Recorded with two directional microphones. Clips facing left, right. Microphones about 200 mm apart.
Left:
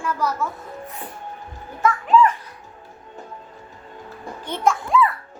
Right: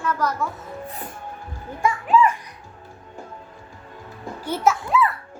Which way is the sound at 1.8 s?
10° right (ahead or behind).